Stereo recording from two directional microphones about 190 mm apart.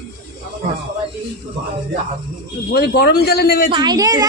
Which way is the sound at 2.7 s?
55° left (ahead or behind).